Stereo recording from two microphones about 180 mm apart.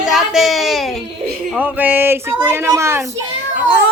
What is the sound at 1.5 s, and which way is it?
A woman's voice, 10° right (ahead or behind).